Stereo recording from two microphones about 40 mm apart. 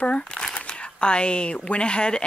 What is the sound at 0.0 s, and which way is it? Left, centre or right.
Speech, left.